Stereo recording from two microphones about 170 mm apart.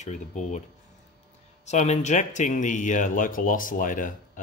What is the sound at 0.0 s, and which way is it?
Speech, 45° left (ahead or behind).